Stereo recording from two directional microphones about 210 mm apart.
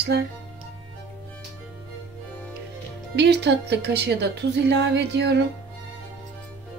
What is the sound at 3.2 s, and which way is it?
A woman's voice, 55° right (ahead or behind).